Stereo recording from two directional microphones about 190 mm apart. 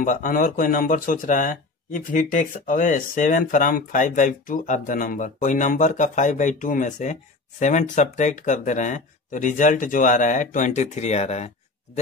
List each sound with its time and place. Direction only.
0.0 s speech: 45° left (ahead or behind)